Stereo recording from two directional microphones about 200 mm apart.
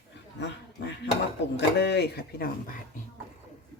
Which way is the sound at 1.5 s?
55° left (ahead or behind).